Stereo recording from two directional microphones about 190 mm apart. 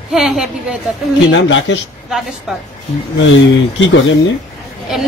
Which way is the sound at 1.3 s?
75° left (ahead or behind).